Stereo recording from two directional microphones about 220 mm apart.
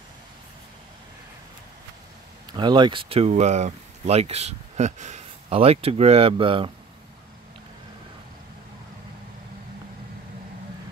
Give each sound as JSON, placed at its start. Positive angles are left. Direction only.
{"t": 2.5, "sound": "speech", "side_deg": -20}